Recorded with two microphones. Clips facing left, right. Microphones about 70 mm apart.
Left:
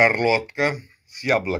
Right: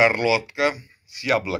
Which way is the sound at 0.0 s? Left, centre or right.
Left.